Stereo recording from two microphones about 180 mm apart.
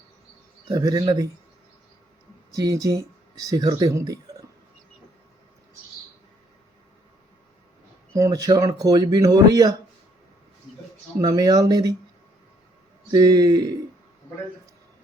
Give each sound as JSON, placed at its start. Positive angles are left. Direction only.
{"t": 0.7, "sound": "speech", "side_deg": -20}
{"t": 2.5, "sound": "speech", "side_deg": -20}
{"t": 8.1, "sound": "speech", "side_deg": -20}
{"t": 11.2, "sound": "speech", "side_deg": -20}
{"t": 13.1, "sound": "speech", "side_deg": -20}